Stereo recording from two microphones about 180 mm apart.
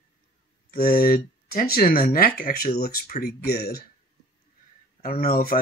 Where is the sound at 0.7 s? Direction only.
55° left (ahead or behind).